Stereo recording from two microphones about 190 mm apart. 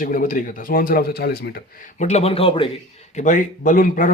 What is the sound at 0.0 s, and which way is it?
A man's voice, 45° left (ahead or behind).